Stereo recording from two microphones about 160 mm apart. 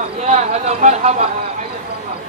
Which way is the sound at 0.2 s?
45° right (ahead or behind).